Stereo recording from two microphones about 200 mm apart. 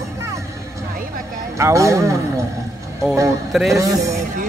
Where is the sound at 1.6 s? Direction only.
15° right (ahead or behind).